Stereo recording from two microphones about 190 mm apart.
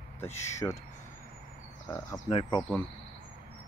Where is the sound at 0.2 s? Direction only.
15° left (ahead or behind).